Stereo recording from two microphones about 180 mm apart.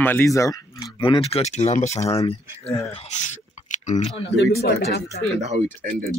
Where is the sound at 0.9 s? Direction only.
30° left (ahead or behind).